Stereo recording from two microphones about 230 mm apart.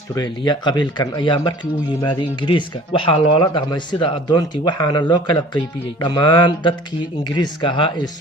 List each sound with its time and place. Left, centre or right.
0.1 s speech: centre